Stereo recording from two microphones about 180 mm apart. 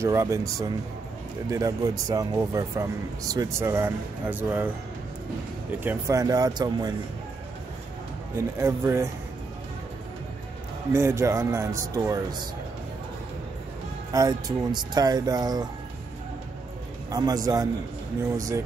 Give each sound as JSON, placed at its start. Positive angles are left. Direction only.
{"t": 0.0, "sound": "speech", "side_deg": -15}
{"t": 8.4, "sound": "speech", "side_deg": -15}
{"t": 10.9, "sound": "speech", "side_deg": -15}
{"t": 14.1, "sound": "speech", "side_deg": -20}
{"t": 17.1, "sound": "speech", "side_deg": -20}